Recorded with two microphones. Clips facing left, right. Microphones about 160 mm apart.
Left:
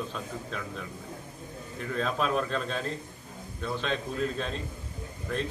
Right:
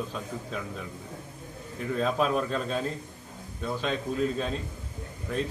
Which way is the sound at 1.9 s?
5° right (ahead or behind).